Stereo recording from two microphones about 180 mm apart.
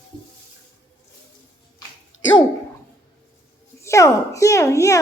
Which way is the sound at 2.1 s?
90° left.